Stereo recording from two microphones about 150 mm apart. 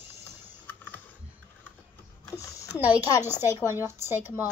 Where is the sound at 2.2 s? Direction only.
20° left (ahead or behind).